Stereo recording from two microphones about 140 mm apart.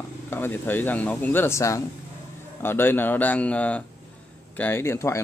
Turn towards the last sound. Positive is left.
turn(degrees=20)  # may be behind; listen again after turning